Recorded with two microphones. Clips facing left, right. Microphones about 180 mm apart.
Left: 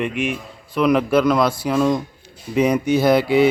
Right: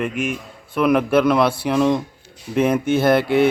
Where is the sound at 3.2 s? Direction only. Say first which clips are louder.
Left 1 dB; 55° right (ahead or behind).